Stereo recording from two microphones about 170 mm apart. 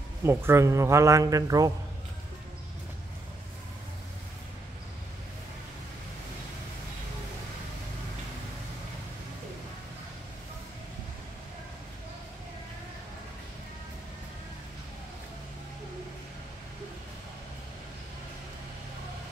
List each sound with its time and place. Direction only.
0.2 s a man's voice: 15° right (ahead or behind)